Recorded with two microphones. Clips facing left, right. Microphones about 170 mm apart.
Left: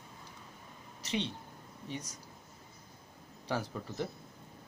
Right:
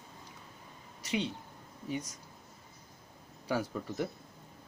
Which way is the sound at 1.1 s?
5° right (ahead or behind).